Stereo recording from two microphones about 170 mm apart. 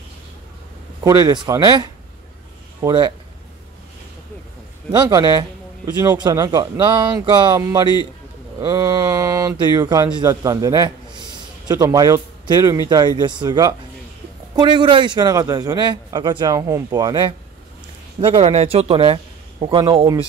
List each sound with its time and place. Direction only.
1.0 s a man's voice: 25° right (ahead or behind)
4.9 s a man's voice: 25° right (ahead or behind)